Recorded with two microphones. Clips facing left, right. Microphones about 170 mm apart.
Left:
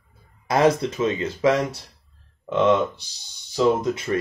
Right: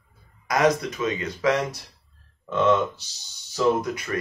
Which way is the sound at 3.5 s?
25° left (ahead or behind).